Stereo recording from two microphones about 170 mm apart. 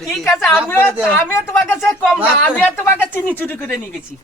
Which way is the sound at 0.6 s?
10° left (ahead or behind).